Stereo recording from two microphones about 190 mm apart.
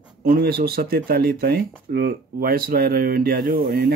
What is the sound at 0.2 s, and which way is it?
Speech, 50° right (ahead or behind).